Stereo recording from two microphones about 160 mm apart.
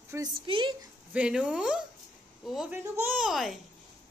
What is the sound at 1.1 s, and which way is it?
A child's voice, 5° right (ahead or behind).